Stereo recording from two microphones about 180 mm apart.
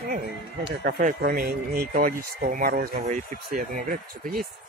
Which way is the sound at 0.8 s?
55° right (ahead or behind).